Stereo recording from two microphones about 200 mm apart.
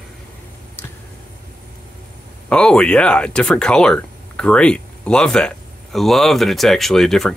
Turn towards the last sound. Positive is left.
turn(degrees=0)  # may be behind; listen again after turning